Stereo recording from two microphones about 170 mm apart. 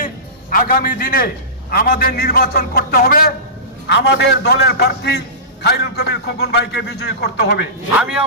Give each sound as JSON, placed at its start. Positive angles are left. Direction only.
{"t": 0.5, "sound": "a man's voice", "side_deg": 60}
{"t": 3.8, "sound": "a man's voice", "side_deg": 90}
{"t": 7.9, "sound": "speech", "side_deg": -5}